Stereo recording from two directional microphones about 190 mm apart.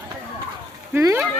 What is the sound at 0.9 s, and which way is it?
Speech, 15° right (ahead or behind).